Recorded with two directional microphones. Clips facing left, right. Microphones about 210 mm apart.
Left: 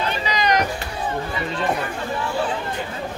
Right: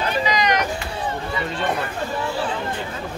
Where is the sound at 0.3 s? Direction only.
35° left (ahead or behind).